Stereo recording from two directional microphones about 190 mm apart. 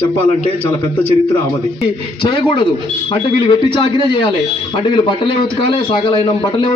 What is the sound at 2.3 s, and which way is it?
A man's voice, 25° left (ahead or behind).